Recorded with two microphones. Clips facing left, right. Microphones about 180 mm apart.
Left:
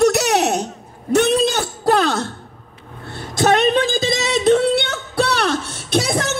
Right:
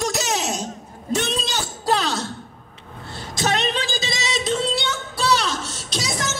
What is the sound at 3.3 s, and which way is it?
Singing, 55° left (ahead or behind).